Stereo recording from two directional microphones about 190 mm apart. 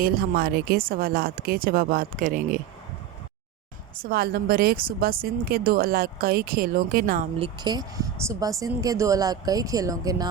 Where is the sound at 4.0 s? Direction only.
55° right (ahead or behind).